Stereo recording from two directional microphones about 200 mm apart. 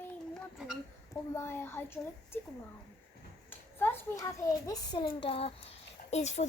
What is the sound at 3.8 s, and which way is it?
A child's voice, 10° left (ahead or behind).